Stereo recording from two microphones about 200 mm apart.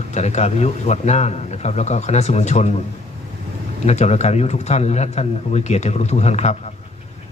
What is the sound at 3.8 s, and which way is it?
A man's voice, 35° left (ahead or behind).